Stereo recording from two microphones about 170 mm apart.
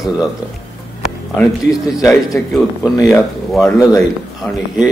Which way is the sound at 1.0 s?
Centre (ahead or behind).